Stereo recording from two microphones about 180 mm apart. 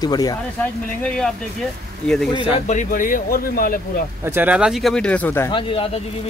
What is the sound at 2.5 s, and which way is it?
Speech, 40° left (ahead or behind).